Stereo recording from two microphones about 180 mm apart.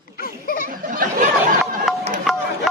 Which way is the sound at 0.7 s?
50° right (ahead or behind).